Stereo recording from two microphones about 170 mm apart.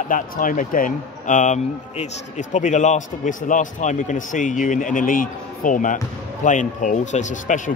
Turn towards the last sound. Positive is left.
turn(degrees=45)  # may be behind; listen again after turning